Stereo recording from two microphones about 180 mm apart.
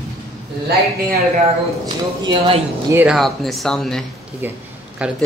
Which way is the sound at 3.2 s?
Centre (ahead or behind).